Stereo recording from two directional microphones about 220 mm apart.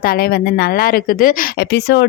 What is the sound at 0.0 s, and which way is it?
Speech, 45° left (ahead or behind).